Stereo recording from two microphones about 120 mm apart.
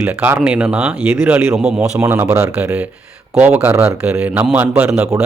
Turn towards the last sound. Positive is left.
turn(degrees=-15)  # may be behind; listen again after turning